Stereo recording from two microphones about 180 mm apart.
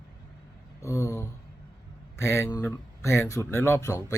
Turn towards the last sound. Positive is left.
turn(degrees=15)  # may be behind; listen again after turning